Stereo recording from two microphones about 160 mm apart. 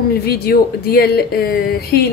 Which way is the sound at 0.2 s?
75° left (ahead or behind).